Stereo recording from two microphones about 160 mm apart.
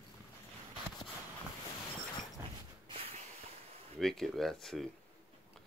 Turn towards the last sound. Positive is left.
turn(degrees=0)  # may be behind; listen again after turning